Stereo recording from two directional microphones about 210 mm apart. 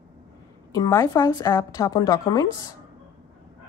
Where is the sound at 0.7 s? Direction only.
15° left (ahead or behind).